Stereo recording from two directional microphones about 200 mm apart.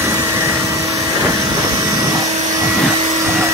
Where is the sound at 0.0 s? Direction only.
15° right (ahead or behind).